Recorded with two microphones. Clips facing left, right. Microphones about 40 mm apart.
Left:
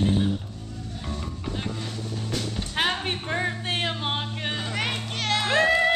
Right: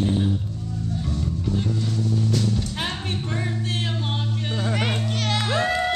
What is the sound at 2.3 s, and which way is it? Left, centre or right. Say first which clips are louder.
Music: right 3 dB; left.